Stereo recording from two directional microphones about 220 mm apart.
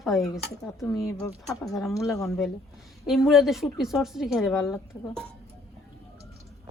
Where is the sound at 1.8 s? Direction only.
15° left (ahead or behind).